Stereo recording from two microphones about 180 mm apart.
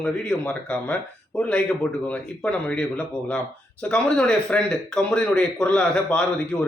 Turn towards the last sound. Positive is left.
turn(degrees=5)  # may be behind; listen again after turning